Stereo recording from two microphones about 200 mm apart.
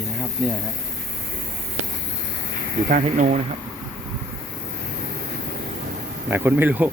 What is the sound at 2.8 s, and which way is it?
Speech, 40° right (ahead or behind).